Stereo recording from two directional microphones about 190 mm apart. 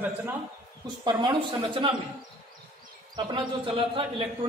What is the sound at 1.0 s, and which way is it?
Speech, 25° right (ahead or behind).